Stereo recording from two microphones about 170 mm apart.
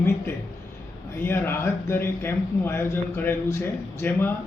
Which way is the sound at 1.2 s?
15° left (ahead or behind).